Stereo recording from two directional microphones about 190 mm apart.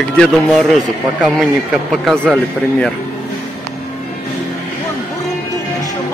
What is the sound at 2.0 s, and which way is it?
Speech, centre (ahead or behind).